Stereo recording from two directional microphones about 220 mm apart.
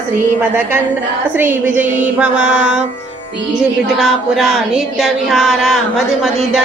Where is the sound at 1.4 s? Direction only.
10° right (ahead or behind).